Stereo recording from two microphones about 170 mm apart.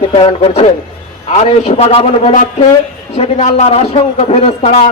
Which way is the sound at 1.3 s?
35° left (ahead or behind).